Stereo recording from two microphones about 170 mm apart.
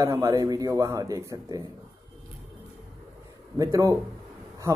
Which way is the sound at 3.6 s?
20° right (ahead or behind).